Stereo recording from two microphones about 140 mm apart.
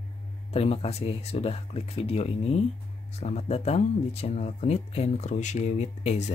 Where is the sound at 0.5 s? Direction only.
45° left (ahead or behind).